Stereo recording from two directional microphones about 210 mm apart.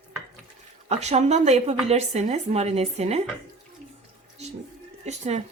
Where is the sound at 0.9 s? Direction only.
30° right (ahead or behind).